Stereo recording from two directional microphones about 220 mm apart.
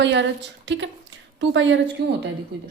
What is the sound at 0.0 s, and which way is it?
Speech, 55° right (ahead or behind).